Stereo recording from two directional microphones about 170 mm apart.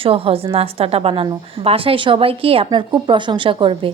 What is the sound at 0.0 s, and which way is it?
Speech, 35° right (ahead or behind).